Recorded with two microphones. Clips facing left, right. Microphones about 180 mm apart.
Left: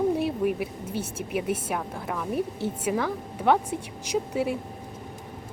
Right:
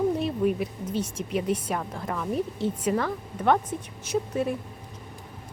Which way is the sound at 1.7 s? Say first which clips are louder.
Even; 5° left (ahead or behind).